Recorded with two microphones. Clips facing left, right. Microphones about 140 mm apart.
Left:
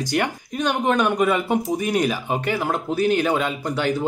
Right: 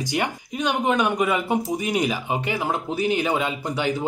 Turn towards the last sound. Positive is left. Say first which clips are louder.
# left 2 dB
turn(degrees=-20)  # may be behind; listen again after turning